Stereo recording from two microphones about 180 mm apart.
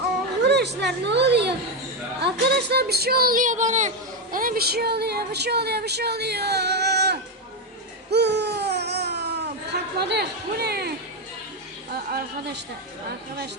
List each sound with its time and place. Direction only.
0.4 s speech: 70° right (ahead or behind)
8.1 s baby cry: 70° right (ahead or behind)
10.0 s speech: 65° right (ahead or behind)
11.9 s a woman's voice: 60° right (ahead or behind)